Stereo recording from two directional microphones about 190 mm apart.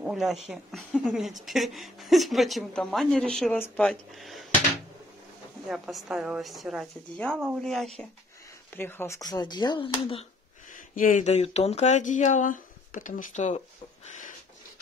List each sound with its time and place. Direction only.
0.0 s a woman's voice: centre (ahead or behind)
5.7 s a woman's voice: centre (ahead or behind); by 10.2 s 30° left (ahead or behind)
11.0 s speech: 40° left (ahead or behind)